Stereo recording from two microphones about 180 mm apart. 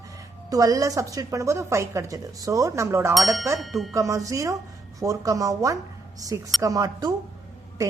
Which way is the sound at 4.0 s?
15° right (ahead or behind).